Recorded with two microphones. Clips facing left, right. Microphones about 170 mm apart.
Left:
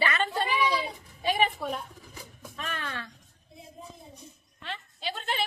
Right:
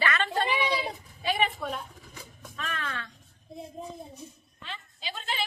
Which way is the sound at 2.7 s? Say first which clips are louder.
Right 1 dB; 30° left (ahead or behind).